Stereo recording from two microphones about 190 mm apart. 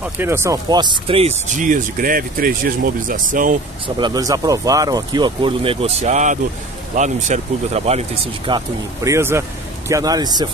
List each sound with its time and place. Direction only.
0.0 s speech: 10° right (ahead or behind); by 3.5 s 45° right (ahead or behind)
3.8 s speech: 20° right (ahead or behind)
8.5 s speech: 20° right (ahead or behind)